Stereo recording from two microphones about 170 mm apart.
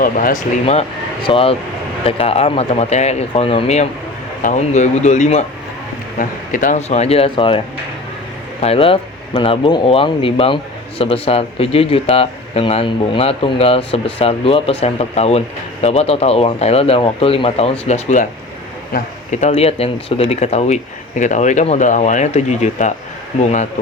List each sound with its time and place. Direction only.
0.0 s speech: 55° left (ahead or behind)
0.6 s speech: 35° left (ahead or behind)
8.6 s speech: 35° left (ahead or behind)
19.3 s speech: 40° left (ahead or behind)